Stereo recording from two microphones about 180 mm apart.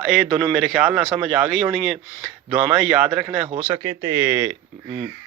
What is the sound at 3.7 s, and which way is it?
Speech, 20° right (ahead or behind).